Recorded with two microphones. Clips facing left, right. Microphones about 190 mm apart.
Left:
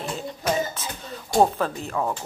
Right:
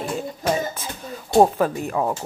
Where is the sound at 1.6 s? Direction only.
10° right (ahead or behind).